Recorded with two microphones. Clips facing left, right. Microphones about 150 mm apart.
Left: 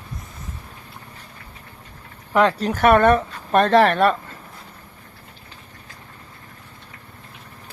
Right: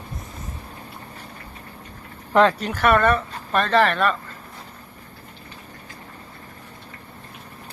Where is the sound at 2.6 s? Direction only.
35° left (ahead or behind).